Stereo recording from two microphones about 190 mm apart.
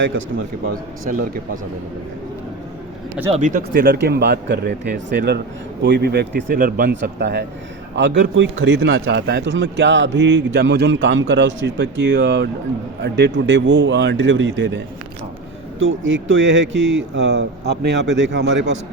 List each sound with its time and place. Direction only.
3.3 s speech: 40° right (ahead or behind)
3.7 s speech: 55° right (ahead or behind)
7.9 s a man's voice: 65° right (ahead or behind)
15.8 s a man's voice: 85° right